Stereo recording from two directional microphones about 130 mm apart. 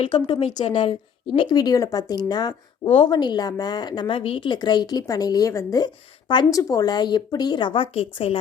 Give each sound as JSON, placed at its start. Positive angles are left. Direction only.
{"t": 0.1, "sound": "a woman's voice", "side_deg": 40}